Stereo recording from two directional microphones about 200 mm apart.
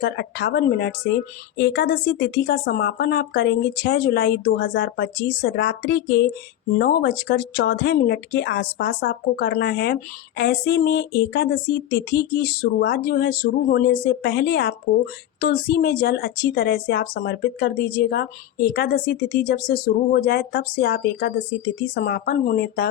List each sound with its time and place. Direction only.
0.0 s speech: 55° left (ahead or behind)